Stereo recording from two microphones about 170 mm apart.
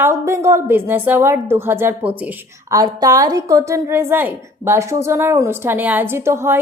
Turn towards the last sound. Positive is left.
turn(degrees=-15)  # may be behind; listen again after turning